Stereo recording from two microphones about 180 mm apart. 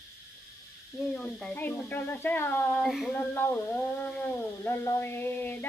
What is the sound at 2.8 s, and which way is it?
Speech, centre (ahead or behind).